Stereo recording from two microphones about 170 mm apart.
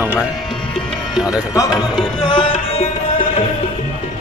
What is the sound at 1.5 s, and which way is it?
Speech, 20° left (ahead or behind).